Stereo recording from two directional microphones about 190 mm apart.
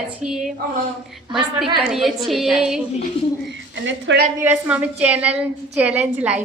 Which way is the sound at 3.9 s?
75° right (ahead or behind).